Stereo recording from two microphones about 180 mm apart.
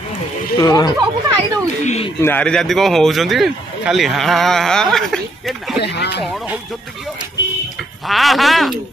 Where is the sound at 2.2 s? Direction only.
10° left (ahead or behind).